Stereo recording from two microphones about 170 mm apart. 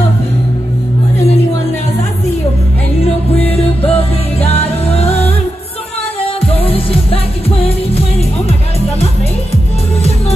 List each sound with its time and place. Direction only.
3.0 s music: 35° left (ahead or behind)